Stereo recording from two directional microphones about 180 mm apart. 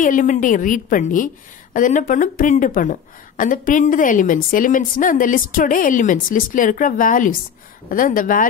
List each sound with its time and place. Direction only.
0.0 s a woman's voice: 45° left (ahead or behind)